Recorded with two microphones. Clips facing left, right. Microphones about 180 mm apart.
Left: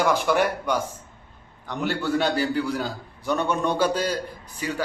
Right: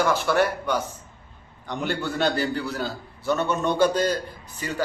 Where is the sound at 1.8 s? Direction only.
10° left (ahead or behind).